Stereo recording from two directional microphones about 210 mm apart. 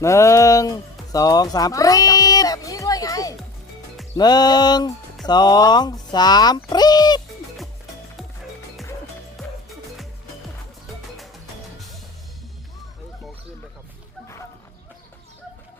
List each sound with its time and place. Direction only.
0.0 s a sound: 15° left (ahead or behind)
4.2 s music: 20° left (ahead or behind)
5.2 s speech: 20° left (ahead or behind)